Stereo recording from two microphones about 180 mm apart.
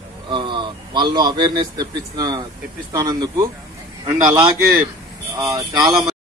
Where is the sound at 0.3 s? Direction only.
25° right (ahead or behind).